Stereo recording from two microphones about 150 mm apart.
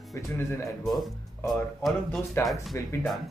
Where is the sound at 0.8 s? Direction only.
Centre (ahead or behind).